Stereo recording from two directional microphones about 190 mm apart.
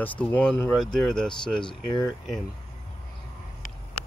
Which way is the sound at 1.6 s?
25° left (ahead or behind).